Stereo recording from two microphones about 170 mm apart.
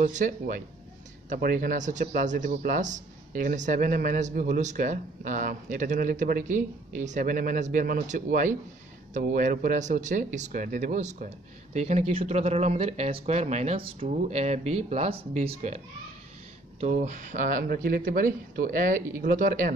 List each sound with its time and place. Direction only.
0.0 s speech: 50° right (ahead or behind)
16.8 s speech: 45° right (ahead or behind)